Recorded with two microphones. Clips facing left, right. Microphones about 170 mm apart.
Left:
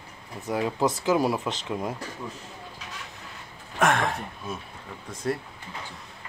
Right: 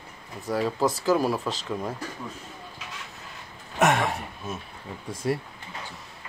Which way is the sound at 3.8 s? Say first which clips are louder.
Right 1 dB; 5° right (ahead or behind).